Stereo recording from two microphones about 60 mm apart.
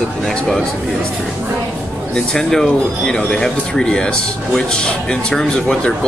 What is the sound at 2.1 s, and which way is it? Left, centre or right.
Speech, centre.